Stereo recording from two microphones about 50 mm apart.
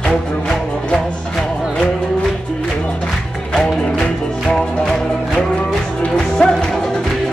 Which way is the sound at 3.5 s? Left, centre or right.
Centre.